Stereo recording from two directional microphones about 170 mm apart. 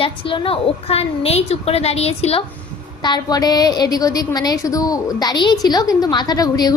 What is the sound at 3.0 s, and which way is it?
A woman's voice, 25° left (ahead or behind).